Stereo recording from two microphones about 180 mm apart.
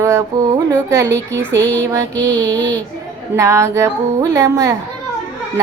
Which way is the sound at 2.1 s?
10° left (ahead or behind).